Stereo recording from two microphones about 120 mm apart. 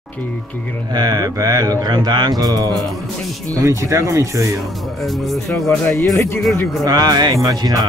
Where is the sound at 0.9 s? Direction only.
30° right (ahead or behind).